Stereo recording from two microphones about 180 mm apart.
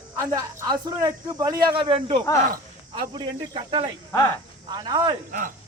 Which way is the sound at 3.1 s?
25° right (ahead or behind).